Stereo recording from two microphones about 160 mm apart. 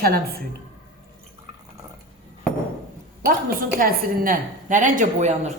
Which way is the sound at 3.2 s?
65° right (ahead or behind).